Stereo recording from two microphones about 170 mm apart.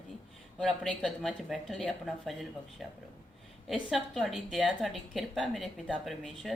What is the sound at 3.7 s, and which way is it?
A woman's voice, centre (ahead or behind).